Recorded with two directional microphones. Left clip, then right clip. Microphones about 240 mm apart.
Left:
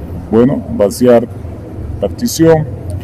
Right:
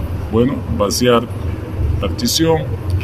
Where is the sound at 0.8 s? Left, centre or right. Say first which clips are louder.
Left 5 dB; left.